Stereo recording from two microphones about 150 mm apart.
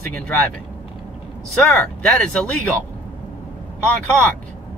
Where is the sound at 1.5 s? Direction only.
5° left (ahead or behind).